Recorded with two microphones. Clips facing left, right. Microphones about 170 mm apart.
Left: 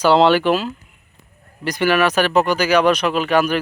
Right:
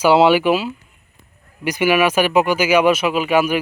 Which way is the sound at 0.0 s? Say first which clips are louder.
Right 1 dB; 10° right (ahead or behind).